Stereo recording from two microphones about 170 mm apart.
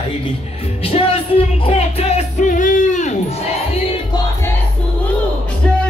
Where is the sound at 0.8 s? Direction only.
35° left (ahead or behind).